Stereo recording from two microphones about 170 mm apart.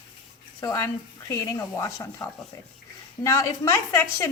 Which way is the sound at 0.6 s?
20° left (ahead or behind).